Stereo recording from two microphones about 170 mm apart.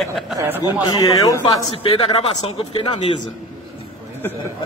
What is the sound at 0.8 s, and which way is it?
Speech, 20° left (ahead or behind).